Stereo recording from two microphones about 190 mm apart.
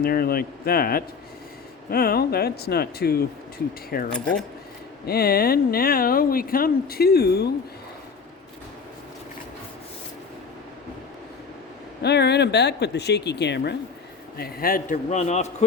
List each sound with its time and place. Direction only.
0.0 s speech: 50° left (ahead or behind)
4.1 s speech: 5° left (ahead or behind)
5.0 s speech: 55° left (ahead or behind)
12.0 s speech: 60° left (ahead or behind); by 15.5 s 35° left (ahead or behind)